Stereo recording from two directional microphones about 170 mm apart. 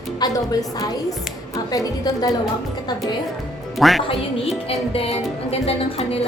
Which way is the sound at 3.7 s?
Centre (ahead or behind).